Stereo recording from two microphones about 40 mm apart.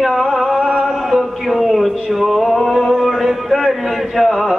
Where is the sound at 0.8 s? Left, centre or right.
Centre.